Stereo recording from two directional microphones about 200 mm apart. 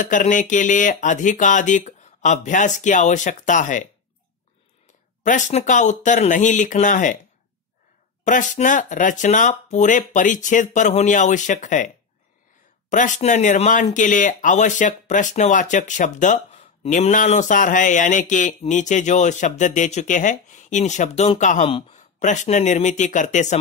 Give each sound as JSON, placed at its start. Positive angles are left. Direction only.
{"t": 0.0, "sound": "speech", "side_deg": 40}
{"t": 5.2, "sound": "speech", "side_deg": 35}
{"t": 8.2, "sound": "speech", "side_deg": 35}
{"t": 12.9, "sound": "speech", "side_deg": 40}